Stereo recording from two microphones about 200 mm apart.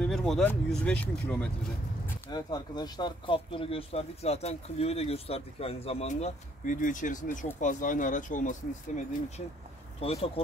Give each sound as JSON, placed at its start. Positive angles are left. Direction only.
{"t": 0.0, "sound": "speech", "side_deg": 5}
{"t": 2.2, "sound": "speech", "side_deg": 20}
{"t": 9.9, "sound": "speech", "side_deg": 30}